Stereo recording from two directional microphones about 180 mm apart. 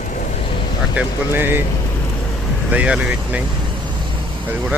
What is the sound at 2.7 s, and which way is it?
Speech, 5° right (ahead or behind).